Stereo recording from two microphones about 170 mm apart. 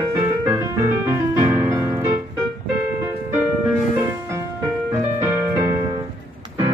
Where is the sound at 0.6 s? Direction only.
15° right (ahead or behind).